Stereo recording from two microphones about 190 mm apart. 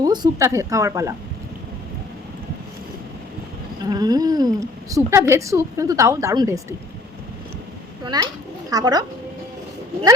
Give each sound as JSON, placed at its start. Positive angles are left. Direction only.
{"t": 0.0, "sound": "a woman's voice", "side_deg": -20}
{"t": 3.8, "sound": "a woman's voice", "side_deg": -20}
{"t": 8.0, "sound": "speech", "side_deg": -20}